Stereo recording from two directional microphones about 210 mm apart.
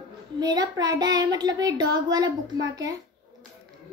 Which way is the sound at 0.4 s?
20° right (ahead or behind).